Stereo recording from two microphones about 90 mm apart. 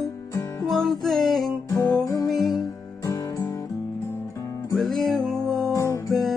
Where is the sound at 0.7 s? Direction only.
Centre (ahead or behind).